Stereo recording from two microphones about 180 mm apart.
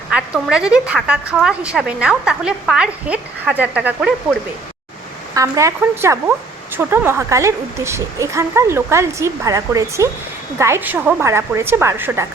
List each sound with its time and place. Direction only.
0.1 s a woman's voice: 5° right (ahead or behind)
5.3 s a woman's voice: 15° right (ahead or behind)